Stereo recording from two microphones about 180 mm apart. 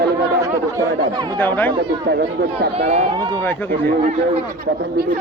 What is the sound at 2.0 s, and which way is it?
Speech, 65° right (ahead or behind).